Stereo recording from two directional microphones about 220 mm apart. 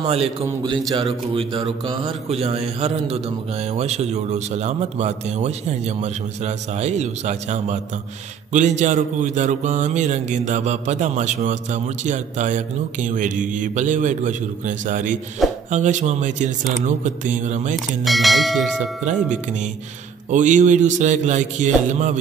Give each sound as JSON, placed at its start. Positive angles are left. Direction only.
{"t": 0.0, "sound": "a man's voice", "side_deg": -25}
{"t": 17.7, "sound": "speech", "side_deg": 0}
{"t": 20.2, "sound": "a man's voice", "side_deg": -35}